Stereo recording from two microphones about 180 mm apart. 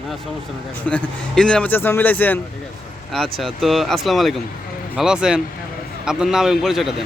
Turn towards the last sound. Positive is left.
turn(degrees=0)  # may be behind; listen again after turning